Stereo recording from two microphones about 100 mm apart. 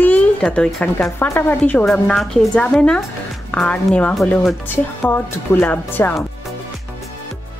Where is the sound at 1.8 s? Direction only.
Centre (ahead or behind).